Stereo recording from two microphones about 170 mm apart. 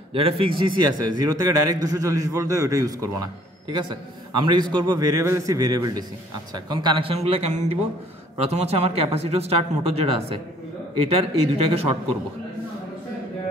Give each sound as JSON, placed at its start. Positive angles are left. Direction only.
{"t": 0.1, "sound": "a man's voice", "side_deg": -30}
{"t": 11.5, "sound": "speech", "side_deg": -35}